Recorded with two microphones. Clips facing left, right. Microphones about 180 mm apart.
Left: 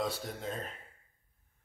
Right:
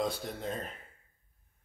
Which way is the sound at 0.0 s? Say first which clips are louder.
Right 2 dB; centre (ahead or behind).